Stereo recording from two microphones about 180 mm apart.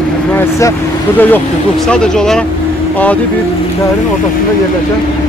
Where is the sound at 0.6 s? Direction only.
15° left (ahead or behind).